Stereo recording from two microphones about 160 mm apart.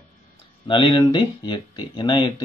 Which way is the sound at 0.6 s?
30° left (ahead or behind).